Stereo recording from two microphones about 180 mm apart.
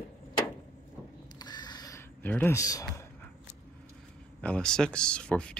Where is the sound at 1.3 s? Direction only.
25° left (ahead or behind).